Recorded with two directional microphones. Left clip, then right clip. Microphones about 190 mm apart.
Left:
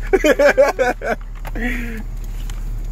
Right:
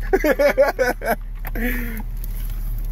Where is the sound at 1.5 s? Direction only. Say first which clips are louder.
Left 2 dB; 55° right (ahead or behind).